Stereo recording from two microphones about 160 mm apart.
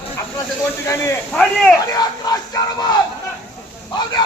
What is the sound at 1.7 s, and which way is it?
Speech, 20° left (ahead or behind).